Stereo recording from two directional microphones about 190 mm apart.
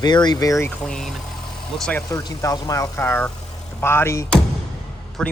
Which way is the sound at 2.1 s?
20° left (ahead or behind).